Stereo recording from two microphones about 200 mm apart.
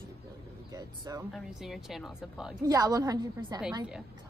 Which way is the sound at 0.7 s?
20° right (ahead or behind).